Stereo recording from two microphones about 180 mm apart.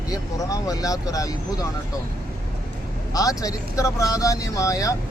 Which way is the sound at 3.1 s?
20° left (ahead or behind).